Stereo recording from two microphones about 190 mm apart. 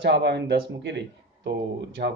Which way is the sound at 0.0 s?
65° right (ahead or behind).